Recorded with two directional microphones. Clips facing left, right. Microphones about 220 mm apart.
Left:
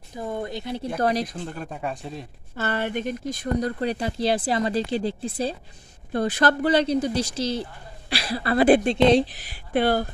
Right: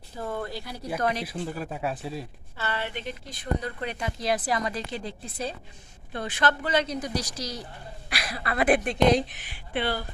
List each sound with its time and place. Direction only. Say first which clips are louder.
0.1 s speech: left 3 dB; 15° left (ahead or behind)
0.9 s speech: left 4 dB; 35° left (ahead or behind)
1.2 s speech: even; 5° right (ahead or behind)
2.5 s speech: left 7 dB; 45° left (ahead or behind)